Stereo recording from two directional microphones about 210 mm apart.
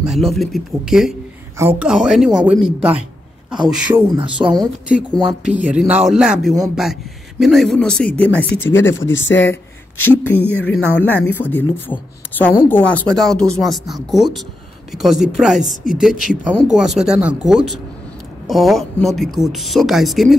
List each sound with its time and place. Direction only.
0.0 s speech: centre (ahead or behind)
4.1 s speech: 25° right (ahead or behind)
4.8 s speech: 5° right (ahead or behind)
8.8 s speech: 60° left (ahead or behind)
10.0 s speech: 10° left (ahead or behind)